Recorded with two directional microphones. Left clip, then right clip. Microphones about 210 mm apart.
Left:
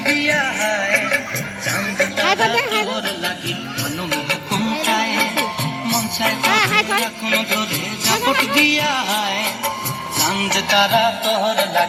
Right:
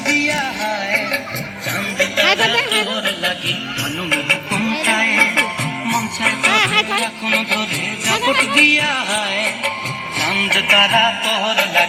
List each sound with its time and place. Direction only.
0.0 s music: 10° left (ahead or behind)
0.3 s music: 20° left (ahead or behind)
2.0 s music: centre (ahead or behind)
2.9 s a sound: 30° right (ahead or behind)
4.9 s music: 20° left (ahead or behind)
5.9 s music: 55° left (ahead or behind)
6.5 s music: 5° left (ahead or behind)
7.0 s music: 50° left (ahead or behind)
10.9 s music: 30° left (ahead or behind)